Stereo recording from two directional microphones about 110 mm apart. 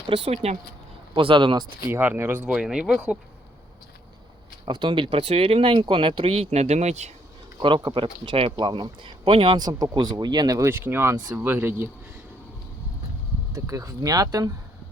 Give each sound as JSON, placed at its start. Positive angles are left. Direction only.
{"t": 0.1, "sound": "speech", "side_deg": -70}
{"t": 1.1, "sound": "speech", "side_deg": -50}
{"t": 1.9, "sound": "speech", "side_deg": -20}
{"t": 4.6, "sound": "speech", "side_deg": -45}
{"t": 7.6, "sound": "speech", "side_deg": -50}
{"t": 10.7, "sound": "speech", "side_deg": -20}
{"t": 13.5, "sound": "speech", "side_deg": -30}